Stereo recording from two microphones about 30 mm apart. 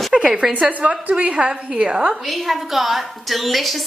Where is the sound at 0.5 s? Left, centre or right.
Right.